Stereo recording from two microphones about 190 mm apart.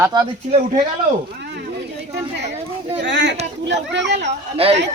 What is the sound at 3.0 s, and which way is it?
Speech, 70° right (ahead or behind).